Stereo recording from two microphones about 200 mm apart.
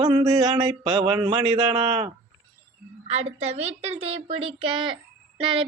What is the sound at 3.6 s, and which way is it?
A woman's voice, 30° right (ahead or behind).